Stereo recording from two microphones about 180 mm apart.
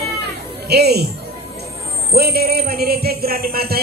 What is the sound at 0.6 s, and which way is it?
Speech, 65° right (ahead or behind).